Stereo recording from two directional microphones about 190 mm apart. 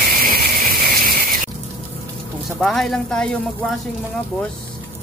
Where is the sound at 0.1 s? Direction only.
50° right (ahead or behind).